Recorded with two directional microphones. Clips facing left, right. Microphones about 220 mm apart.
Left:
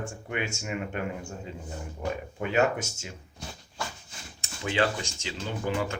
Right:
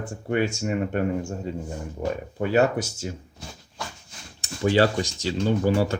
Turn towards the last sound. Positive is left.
turn(degrees=-35)  # may be behind; listen again after turning